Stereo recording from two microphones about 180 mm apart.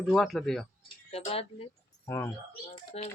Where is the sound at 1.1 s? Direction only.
35° left (ahead or behind).